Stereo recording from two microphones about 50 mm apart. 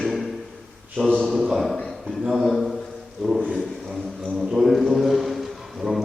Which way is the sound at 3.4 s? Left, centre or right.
Centre.